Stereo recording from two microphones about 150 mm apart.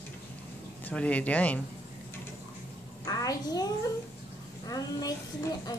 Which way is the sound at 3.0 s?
25° left (ahead or behind).